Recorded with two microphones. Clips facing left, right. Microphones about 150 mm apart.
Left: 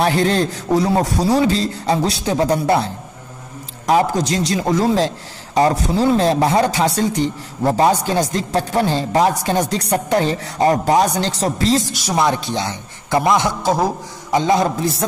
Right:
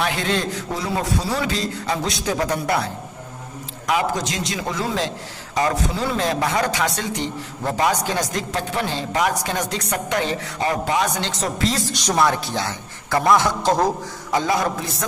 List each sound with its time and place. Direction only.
0.0 s a man's voice: 35° left (ahead or behind)
11.9 s speech: 5° left (ahead or behind)
12.2 s a man's voice: 20° left (ahead or behind)